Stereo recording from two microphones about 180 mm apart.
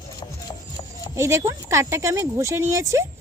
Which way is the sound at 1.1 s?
15° right (ahead or behind).